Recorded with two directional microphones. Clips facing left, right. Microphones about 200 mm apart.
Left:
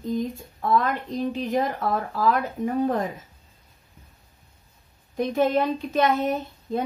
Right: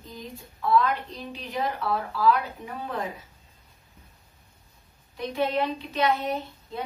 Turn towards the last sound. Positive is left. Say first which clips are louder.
# left 5 dB
turn(degrees=45)  # may be behind; listen again after turning